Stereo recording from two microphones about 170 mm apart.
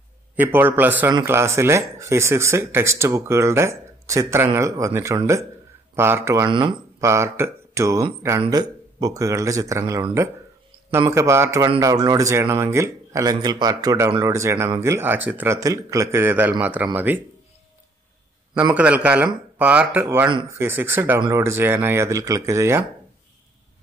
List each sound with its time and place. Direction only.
0.4 s speech: 10° right (ahead or behind)
6.5 s speech: 30° right (ahead or behind)
7.0 s speech: 15° right (ahead or behind)
18.8 s speech: 10° right (ahead or behind)